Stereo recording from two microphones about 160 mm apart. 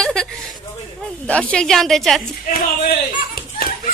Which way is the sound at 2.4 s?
60° left (ahead or behind).